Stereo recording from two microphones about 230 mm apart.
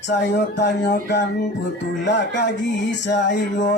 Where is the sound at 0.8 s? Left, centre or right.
Left.